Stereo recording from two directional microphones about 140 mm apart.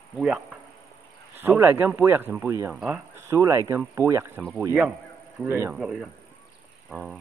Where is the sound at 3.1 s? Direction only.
20° right (ahead or behind).